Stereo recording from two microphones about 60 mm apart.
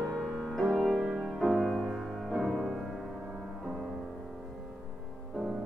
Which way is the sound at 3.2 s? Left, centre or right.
Centre.